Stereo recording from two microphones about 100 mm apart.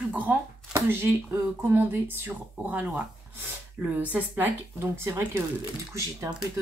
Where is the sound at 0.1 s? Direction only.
20° right (ahead or behind).